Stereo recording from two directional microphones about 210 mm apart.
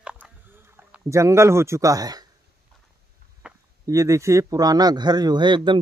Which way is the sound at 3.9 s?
15° right (ahead or behind).